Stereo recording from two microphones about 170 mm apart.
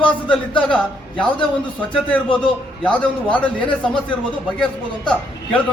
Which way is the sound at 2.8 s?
10° left (ahead or behind).